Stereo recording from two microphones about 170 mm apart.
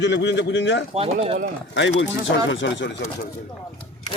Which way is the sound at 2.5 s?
90° left.